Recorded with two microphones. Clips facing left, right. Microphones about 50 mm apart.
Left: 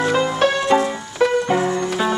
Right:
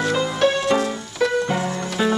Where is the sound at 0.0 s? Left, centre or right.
Centre.